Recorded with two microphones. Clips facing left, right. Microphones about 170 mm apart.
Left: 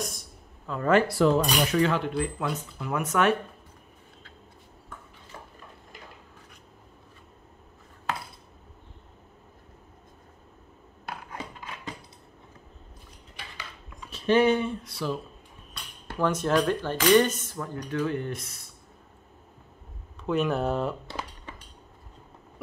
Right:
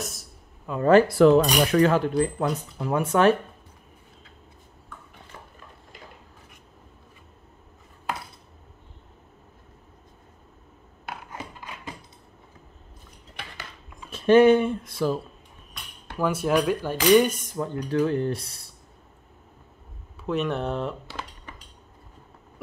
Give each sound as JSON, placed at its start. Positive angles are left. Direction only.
{"t": 0.0, "sound": "a sound", "side_deg": 0}
{"t": 0.7, "sound": "speech", "side_deg": -15}
{"t": 1.0, "sound": "cutlery", "side_deg": -60}
{"t": 1.8, "sound": "speech", "side_deg": -40}
{"t": 14.1, "sound": "speech", "side_deg": -50}
{"t": 16.2, "sound": "speech", "side_deg": -10}
{"t": 17.8, "sound": "speech", "side_deg": -35}
{"t": 20.2, "sound": "speech", "side_deg": 0}